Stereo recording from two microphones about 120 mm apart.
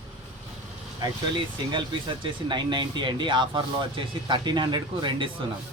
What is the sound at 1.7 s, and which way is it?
Speech, 40° right (ahead or behind).